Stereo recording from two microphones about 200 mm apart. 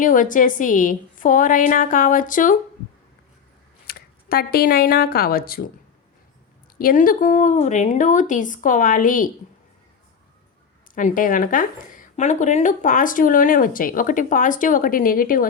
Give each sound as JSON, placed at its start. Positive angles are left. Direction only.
{"t": 0.0, "sound": "a woman's voice", "side_deg": 40}
{"t": 3.8, "sound": "speech", "side_deg": 50}
{"t": 6.7, "sound": "a woman's voice", "side_deg": 45}
{"t": 10.9, "sound": "a woman's voice", "side_deg": 40}